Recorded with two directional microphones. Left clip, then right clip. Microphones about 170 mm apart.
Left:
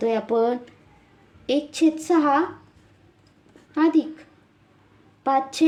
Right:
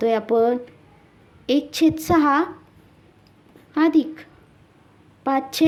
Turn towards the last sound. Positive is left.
turn(degrees=-20)  # may be behind; listen again after turning